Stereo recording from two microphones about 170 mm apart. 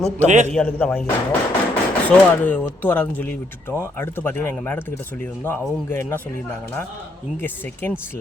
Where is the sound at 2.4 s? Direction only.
10° left (ahead or behind).